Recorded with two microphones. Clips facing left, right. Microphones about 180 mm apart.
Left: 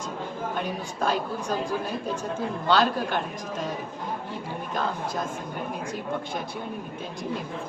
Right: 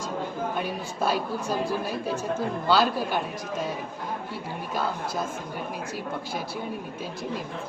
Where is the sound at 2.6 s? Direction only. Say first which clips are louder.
Even; 5° right (ahead or behind).